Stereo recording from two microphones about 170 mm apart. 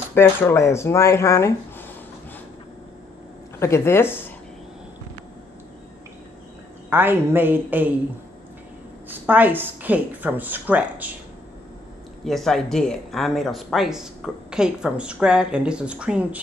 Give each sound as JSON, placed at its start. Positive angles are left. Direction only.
{"t": 0.1, "sound": "speech", "side_deg": 10}
{"t": 3.5, "sound": "speech", "side_deg": 15}
{"t": 6.9, "sound": "a woman's voice", "side_deg": -10}
{"t": 9.1, "sound": "a woman's voice", "side_deg": -10}
{"t": 12.3, "sound": "speech", "side_deg": 0}